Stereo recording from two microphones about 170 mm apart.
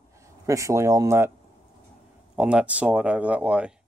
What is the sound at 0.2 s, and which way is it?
Speech, 20° right (ahead or behind).